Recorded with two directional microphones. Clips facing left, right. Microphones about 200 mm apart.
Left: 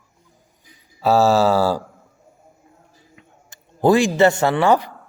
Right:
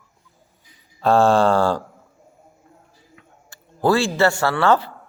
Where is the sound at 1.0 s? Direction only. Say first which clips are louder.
Even; 5° left (ahead or behind).